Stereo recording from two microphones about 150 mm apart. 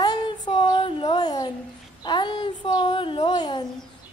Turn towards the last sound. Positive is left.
turn(degrees=30)  # may be behind; listen again after turning